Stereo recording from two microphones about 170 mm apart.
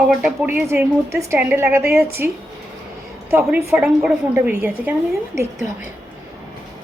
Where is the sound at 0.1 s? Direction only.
5° right (ahead or behind).